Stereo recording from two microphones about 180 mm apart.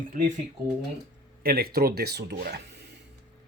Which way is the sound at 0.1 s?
45° right (ahead or behind).